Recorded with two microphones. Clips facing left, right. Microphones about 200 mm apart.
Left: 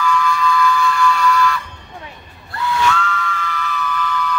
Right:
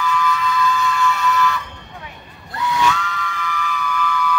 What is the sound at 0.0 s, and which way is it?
Siren, 20° right (ahead or behind).